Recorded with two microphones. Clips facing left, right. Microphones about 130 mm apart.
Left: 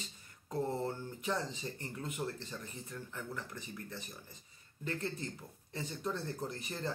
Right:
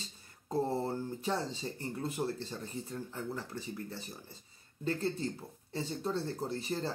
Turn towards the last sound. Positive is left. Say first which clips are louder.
# right 4 dB
turn(degrees=-30)  # may be behind; listen again after turning